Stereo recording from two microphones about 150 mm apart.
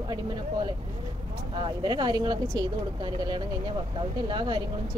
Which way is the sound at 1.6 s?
30° right (ahead or behind).